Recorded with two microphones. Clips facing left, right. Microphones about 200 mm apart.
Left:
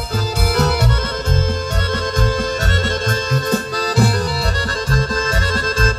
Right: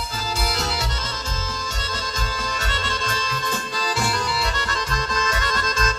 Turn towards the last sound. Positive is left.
turn(degrees=40)  # may be behind; listen again after turning